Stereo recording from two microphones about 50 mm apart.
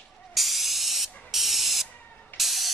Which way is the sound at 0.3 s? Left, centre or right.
Centre.